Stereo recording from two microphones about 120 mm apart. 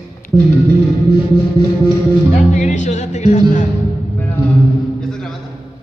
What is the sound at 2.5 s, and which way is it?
Speech, 90° left.